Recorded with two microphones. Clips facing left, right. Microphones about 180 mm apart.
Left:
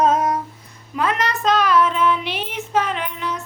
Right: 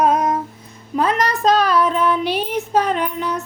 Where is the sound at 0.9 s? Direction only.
35° right (ahead or behind).